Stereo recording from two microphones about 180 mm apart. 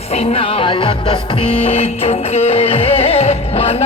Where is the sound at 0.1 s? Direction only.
35° left (ahead or behind).